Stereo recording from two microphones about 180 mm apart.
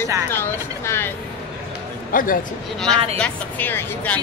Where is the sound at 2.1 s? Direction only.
50° left (ahead or behind).